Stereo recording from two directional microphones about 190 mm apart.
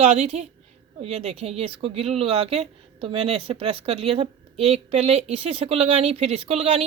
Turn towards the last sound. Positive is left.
turn(degrees=-35)  # may be behind; listen again after turning